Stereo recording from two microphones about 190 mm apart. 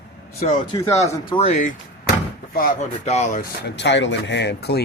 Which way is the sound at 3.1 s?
40° left (ahead or behind).